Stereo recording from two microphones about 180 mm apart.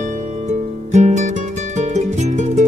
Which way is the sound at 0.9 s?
40° right (ahead or behind).